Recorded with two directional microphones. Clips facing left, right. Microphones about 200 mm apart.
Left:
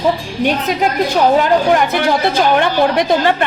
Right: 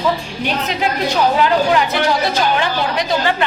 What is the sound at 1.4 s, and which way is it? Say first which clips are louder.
A woman's voice: left 2 dB; 50° left (ahead or behind).